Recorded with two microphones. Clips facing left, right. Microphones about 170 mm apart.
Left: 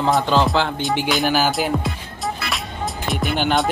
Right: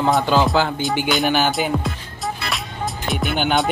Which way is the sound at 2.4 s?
Centre (ahead or behind).